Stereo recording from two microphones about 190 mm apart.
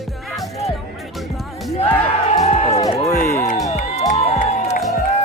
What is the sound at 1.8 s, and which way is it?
Music, 35° left (ahead or behind).